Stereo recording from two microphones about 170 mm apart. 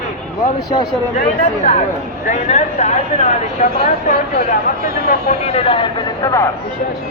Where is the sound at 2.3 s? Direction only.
45° left (ahead or behind).